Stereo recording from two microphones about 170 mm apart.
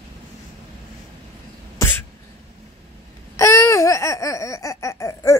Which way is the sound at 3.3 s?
15° left (ahead or behind).